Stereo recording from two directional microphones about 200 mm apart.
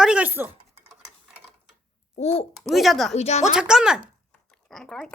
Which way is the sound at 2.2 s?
30° left (ahead or behind).